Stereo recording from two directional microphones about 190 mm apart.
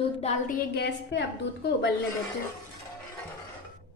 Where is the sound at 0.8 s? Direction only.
70° left (ahead or behind).